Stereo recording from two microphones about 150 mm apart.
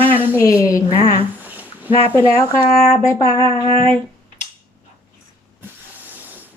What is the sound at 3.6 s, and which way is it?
Speech, 40° right (ahead or behind).